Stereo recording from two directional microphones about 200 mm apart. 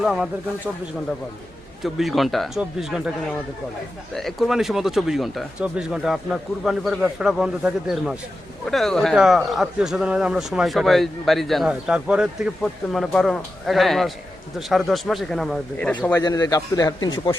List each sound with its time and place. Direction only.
0.0 s a man's voice: 5° right (ahead or behind)
1.8 s a man's voice: centre (ahead or behind)
4.1 s a man's voice: centre (ahead or behind)
16.2 s a man's voice: 20° left (ahead or behind)